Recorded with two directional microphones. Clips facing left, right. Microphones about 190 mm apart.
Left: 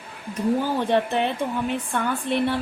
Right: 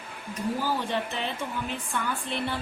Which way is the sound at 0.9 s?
60° left (ahead or behind).